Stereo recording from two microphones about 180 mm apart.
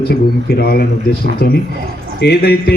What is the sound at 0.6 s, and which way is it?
Speech, 60° left (ahead or behind).